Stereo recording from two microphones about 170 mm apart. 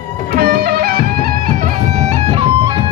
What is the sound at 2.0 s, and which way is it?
Guitar, 35° right (ahead or behind).